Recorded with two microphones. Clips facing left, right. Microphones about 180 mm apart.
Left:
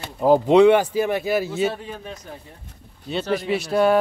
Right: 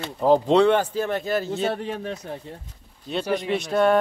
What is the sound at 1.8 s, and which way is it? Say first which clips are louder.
Speech: right 5 dB; 70° right (ahead or behind).